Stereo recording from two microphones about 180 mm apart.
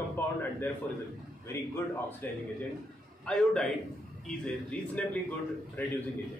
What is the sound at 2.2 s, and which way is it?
Speech, 10° left (ahead or behind).